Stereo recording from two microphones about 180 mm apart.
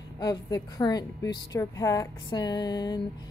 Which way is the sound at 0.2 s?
20° left (ahead or behind).